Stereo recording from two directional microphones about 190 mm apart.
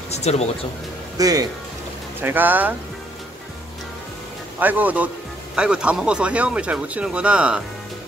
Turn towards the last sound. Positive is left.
turn(degrees=-5)  # may be behind; listen again after turning